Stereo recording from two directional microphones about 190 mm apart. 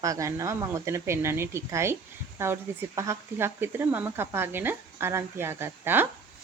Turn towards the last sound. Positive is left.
turn(degrees=-10)  # may be behind; listen again after turning